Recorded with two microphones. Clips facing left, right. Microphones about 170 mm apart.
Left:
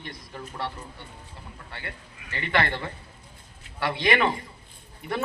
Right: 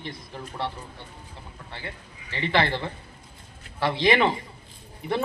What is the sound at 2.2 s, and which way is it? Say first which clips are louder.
Speech: right 2 dB; 30° right (ahead or behind).